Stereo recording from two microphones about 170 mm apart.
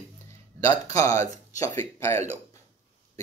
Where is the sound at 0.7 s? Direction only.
40° right (ahead or behind).